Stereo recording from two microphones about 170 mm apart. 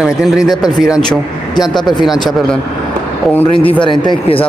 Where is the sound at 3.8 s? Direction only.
25° left (ahead or behind).